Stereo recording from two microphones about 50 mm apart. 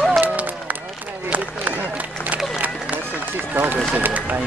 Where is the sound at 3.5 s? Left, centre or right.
Right.